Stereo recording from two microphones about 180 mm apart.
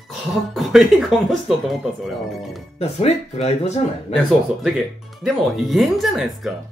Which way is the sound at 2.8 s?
35° left (ahead or behind).